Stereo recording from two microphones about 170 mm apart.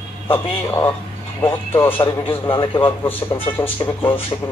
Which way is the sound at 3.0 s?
15° left (ahead or behind).